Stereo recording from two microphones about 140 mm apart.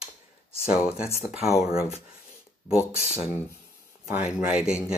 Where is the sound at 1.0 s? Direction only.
20° left (ahead or behind).